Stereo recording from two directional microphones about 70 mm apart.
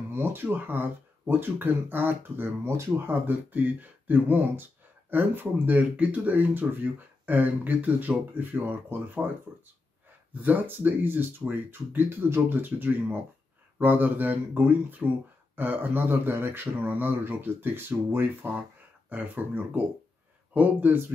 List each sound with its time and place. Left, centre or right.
0.1 s speech: right
10.3 s speech: right